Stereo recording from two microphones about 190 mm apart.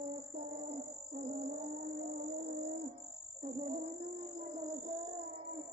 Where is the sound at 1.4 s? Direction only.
40° right (ahead or behind).